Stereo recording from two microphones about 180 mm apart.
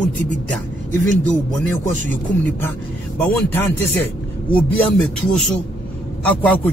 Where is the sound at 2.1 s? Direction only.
10° left (ahead or behind).